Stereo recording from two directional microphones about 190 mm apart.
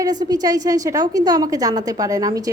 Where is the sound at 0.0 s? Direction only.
20° right (ahead or behind).